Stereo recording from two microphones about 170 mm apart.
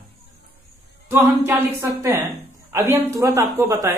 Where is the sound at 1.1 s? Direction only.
15° right (ahead or behind).